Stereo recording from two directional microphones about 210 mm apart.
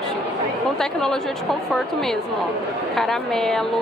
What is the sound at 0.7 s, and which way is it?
Speech, centre (ahead or behind).